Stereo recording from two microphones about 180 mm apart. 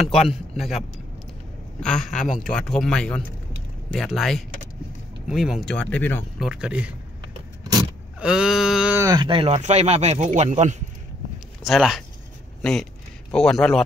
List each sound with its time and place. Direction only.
0.3 s a man's voice: centre (ahead or behind)
2.1 s speech: 45° left (ahead or behind)
2.4 s speech: 5° left (ahead or behind)
6.4 s speech: 5° right (ahead or behind)
8.2 s speech: 5° right (ahead or behind)
9.0 s speech: 25° right (ahead or behind); by 10.8 s 40° right (ahead or behind)
11.6 s speech: centre (ahead or behind)
13.3 s speech: centre (ahead or behind)